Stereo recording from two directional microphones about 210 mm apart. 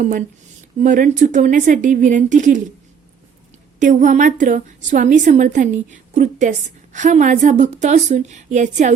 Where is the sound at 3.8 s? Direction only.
35° right (ahead or behind).